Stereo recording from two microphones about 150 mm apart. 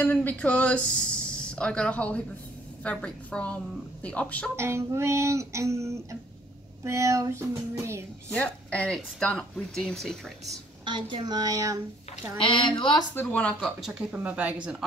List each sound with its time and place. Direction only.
0.0 s a woman's voice: 10° left (ahead or behind)
4.6 s speech: 15° right (ahead or behind)
8.3 s speech: 10° left (ahead or behind)
10.9 s speech: 35° right (ahead or behind)
12.4 s a woman's voice: 35° left (ahead or behind)
13.1 s speech: 10° left (ahead or behind); by 14.9 s 10° right (ahead or behind)